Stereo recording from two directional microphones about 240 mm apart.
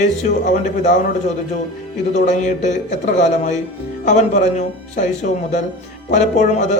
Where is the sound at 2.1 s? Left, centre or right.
Left.